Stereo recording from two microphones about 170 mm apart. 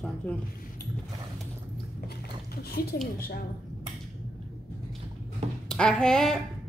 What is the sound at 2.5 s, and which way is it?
Speech, 65° left (ahead or behind).